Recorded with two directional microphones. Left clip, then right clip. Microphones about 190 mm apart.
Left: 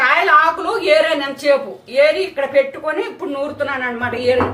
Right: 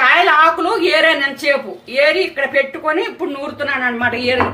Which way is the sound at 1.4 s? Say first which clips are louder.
Left 1 dB; 25° right (ahead or behind).